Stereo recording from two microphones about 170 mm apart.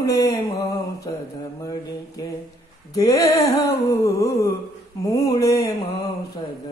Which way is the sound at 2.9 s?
20° left (ahead or behind).